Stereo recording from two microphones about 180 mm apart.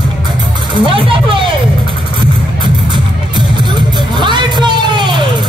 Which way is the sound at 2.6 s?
25° right (ahead or behind).